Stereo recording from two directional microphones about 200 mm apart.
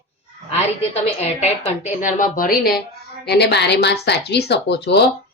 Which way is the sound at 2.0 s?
40° left (ahead or behind).